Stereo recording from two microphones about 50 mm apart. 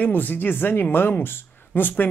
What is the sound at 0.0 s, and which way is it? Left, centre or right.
Speech, left.